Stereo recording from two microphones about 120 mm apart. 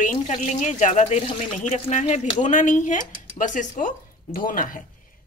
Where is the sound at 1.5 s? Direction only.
85° left.